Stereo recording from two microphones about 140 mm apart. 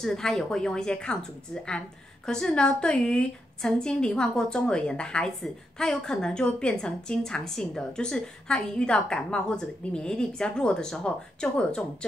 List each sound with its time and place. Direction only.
0.0 s a woman's voice: 5° left (ahead or behind)